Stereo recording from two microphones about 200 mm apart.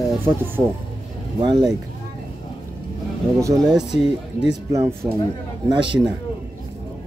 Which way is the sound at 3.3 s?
15° right (ahead or behind).